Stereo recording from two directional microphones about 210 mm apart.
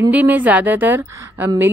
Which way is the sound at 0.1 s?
10° right (ahead or behind).